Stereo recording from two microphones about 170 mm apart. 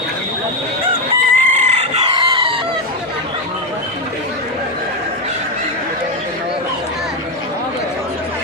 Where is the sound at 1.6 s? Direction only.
40° right (ahead or behind).